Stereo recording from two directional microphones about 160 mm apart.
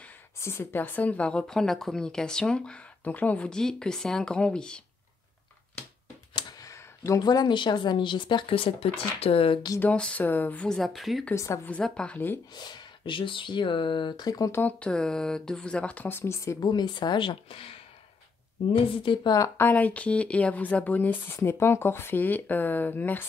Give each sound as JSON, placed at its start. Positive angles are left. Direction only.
{"t": 0.0, "sound": "speech", "side_deg": 15}
{"t": 6.3, "sound": "a sound", "side_deg": 20}
{"t": 7.1, "sound": "speech", "side_deg": 25}
{"t": 9.8, "sound": "speech", "side_deg": 5}
{"t": 11.3, "sound": "speech", "side_deg": 20}
{"t": 12.5, "sound": "speech", "side_deg": 25}